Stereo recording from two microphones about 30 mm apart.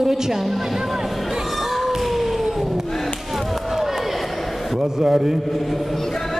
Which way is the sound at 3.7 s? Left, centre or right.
Centre.